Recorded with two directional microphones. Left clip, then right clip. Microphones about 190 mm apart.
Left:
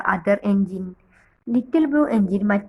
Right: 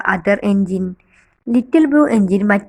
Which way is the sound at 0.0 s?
20° right (ahead or behind).